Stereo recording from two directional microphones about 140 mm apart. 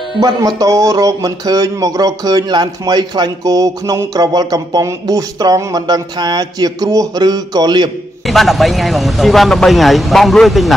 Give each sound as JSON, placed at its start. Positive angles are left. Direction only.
{"t": 0.6, "sound": "speech", "side_deg": -25}
{"t": 8.3, "sound": "speech", "side_deg": 0}